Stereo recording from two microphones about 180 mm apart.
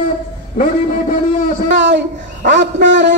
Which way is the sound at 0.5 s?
50° left (ahead or behind).